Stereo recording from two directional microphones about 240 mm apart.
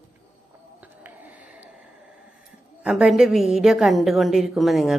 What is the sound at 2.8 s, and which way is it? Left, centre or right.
Speech, centre.